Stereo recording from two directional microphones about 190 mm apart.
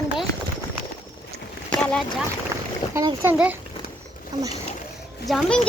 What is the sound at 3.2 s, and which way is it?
Speech, 10° right (ahead or behind).